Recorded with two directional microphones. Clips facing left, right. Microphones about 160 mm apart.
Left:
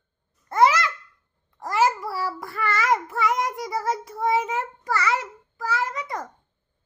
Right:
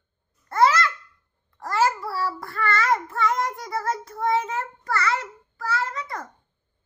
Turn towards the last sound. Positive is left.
turn(degrees=15)  # may be behind; listen again after turning